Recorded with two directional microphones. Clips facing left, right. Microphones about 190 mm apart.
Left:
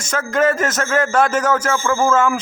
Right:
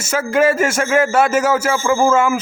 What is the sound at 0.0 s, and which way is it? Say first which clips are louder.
A man's voice: right 2 dB; 10° right (ahead or behind).